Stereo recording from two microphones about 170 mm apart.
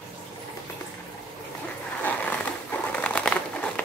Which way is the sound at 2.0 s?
10° left (ahead or behind).